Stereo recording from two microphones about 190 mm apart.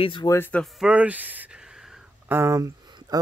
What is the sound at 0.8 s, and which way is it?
Speech, 5° right (ahead or behind).